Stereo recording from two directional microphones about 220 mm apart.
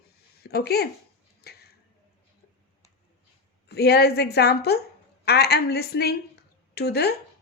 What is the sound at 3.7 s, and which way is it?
A woman's voice, 50° left (ahead or behind).